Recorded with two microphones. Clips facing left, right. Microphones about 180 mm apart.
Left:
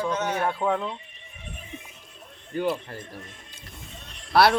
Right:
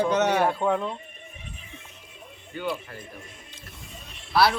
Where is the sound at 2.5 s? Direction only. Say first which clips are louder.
Left 5 dB; 40° left (ahead or behind).